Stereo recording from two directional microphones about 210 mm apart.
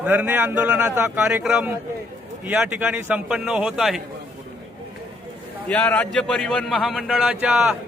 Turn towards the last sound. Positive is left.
turn(degrees=-5)  # may be behind; listen again after turning